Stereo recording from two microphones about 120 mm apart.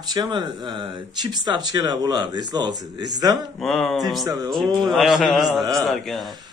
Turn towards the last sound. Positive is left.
turn(degrees=0)  # may be behind; listen again after turning